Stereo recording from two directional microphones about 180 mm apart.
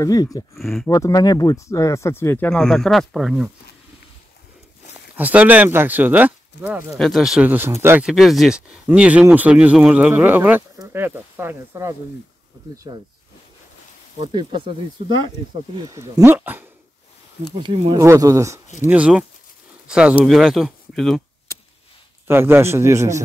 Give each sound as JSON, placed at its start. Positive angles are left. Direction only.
{"t": 0.0, "sound": "speech", "side_deg": 20}
{"t": 0.6, "sound": "speech", "side_deg": 0}
{"t": 0.8, "sound": "speech", "side_deg": 20}
{"t": 5.1, "sound": "speech", "side_deg": -10}
{"t": 14.2, "sound": "speech", "side_deg": -25}
{"t": 15.7, "sound": "speech", "side_deg": -20}
{"t": 17.9, "sound": "speech", "side_deg": -20}
{"t": 18.9, "sound": "speech", "side_deg": -5}
{"t": 22.3, "sound": "speech", "side_deg": -15}